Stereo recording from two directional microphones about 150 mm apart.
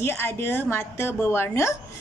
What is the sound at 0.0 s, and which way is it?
A woman's voice, 15° left (ahead or behind).